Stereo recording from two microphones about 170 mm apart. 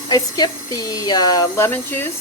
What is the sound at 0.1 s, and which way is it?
Speech, 25° left (ahead or behind).